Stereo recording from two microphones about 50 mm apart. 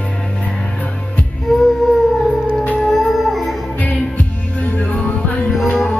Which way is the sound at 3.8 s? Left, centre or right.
Left.